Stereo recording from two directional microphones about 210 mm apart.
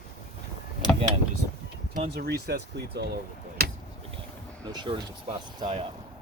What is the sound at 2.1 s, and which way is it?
Speech, 50° right (ahead or behind).